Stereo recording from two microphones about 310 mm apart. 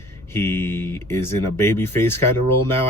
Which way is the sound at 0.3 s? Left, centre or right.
Centre.